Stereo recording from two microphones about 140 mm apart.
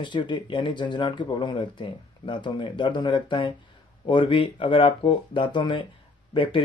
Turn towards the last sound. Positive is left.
turn(degrees=35)  # may be behind; listen again after turning